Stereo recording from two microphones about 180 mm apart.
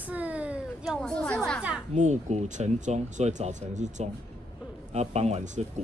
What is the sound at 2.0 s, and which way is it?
Speech, 40° right (ahead or behind).